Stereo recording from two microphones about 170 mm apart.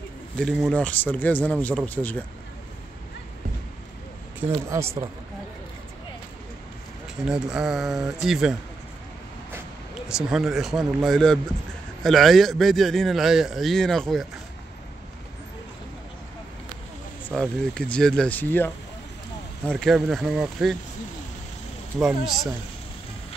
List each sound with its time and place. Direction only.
0.4 s speech: 5° left (ahead or behind)
4.4 s speech: 15° right (ahead or behind)
7.2 s a man's voice: 5° right (ahead or behind)
10.0 s a man's voice: 5° right (ahead or behind)
17.3 s a man's voice: 5° left (ahead or behind)
19.7 s a man's voice: 5° left (ahead or behind)
22.0 s a man's voice: centre (ahead or behind)